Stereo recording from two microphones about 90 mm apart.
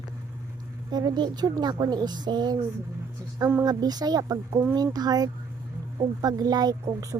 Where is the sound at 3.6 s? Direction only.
45° right (ahead or behind).